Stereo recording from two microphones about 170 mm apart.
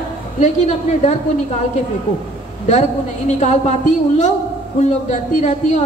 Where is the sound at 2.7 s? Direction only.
40° left (ahead or behind).